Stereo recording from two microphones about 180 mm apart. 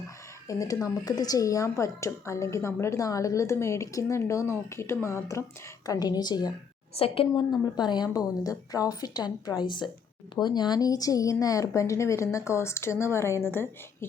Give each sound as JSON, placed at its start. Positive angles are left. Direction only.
{"t": 0.4, "sound": "a woman's voice", "side_deg": 20}